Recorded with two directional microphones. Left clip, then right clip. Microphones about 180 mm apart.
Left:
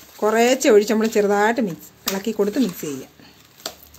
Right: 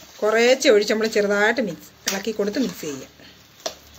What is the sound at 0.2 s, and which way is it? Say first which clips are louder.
Speech: even; 50° left (ahead or behind).